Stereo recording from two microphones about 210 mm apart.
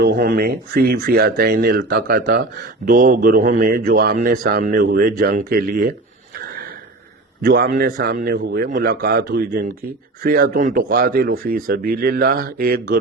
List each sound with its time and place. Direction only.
0.0 s speech: 50° right (ahead or behind)
6.3 s a sound: 45° right (ahead or behind)
7.4 s speech: 45° right (ahead or behind)